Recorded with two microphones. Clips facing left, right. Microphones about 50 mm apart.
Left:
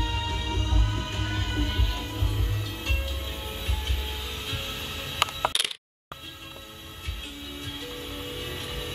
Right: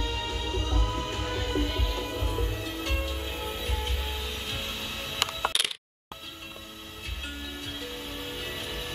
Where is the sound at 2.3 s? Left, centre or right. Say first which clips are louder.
Right 3 dB; right.